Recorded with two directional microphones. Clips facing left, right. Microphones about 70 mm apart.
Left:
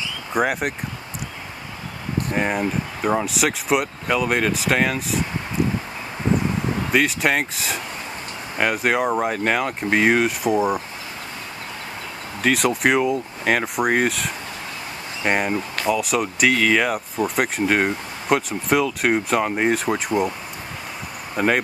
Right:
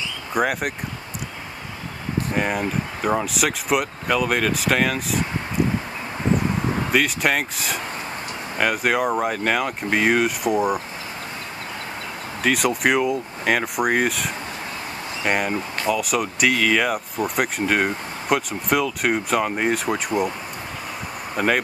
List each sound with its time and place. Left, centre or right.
0.3 s speech: centre
2.3 s speech: centre
6.9 s speech: centre
12.4 s speech: centre
21.4 s speech: centre